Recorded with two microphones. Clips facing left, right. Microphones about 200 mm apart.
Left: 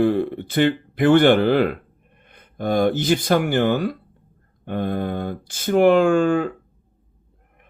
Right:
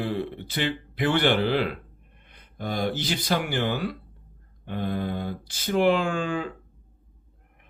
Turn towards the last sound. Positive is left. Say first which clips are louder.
# left 10 dB
turn(degrees=50)  # may be behind; listen again after turning